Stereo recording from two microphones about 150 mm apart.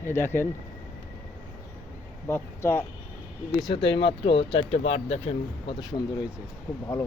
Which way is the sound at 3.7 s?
35° left (ahead or behind).